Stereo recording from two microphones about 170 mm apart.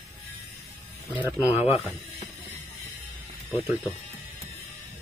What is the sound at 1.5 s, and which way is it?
Speech, 35° left (ahead or behind).